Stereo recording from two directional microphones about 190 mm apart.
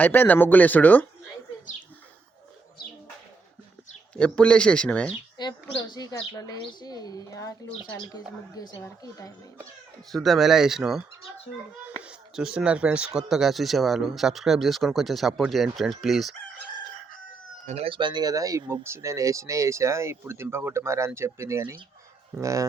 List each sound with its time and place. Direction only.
0.0 s speech: 10° left (ahead or behind)
4.1 s speech: 5° left (ahead or behind)
5.4 s speech: 20° left (ahead or behind)
8.5 s speech: 20° left (ahead or behind)
10.1 s speech: centre (ahead or behind)
17.7 s speech: 30° right (ahead or behind)